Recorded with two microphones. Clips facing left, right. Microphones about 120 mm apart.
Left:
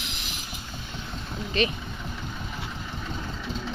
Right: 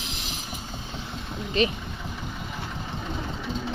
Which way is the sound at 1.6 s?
30° right (ahead or behind).